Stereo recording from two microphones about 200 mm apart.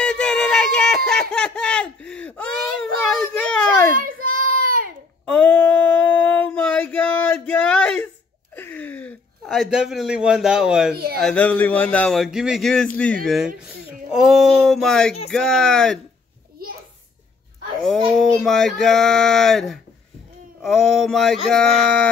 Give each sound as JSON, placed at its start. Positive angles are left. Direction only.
{"t": 0.0, "sound": "a sound", "side_deg": 5}
{"t": 3.9, "sound": "child singing", "side_deg": -45}
{"t": 5.2, "sound": "female singing", "side_deg": 5}
{"t": 8.5, "sound": "a sound", "side_deg": 10}
{"t": 11.1, "sound": "speech", "side_deg": 5}
{"t": 17.8, "sound": "speech", "side_deg": 0}